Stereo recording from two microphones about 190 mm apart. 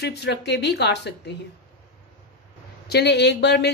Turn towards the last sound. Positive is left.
turn(degrees=60)  # may be behind; listen again after turning